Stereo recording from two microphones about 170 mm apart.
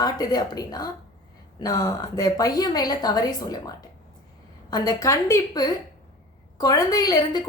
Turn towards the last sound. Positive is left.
turn(degrees=25)  # may be behind; listen again after turning